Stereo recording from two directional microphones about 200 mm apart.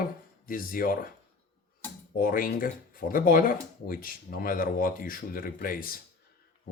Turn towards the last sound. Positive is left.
turn(degrees=45)  # may be behind; listen again after turning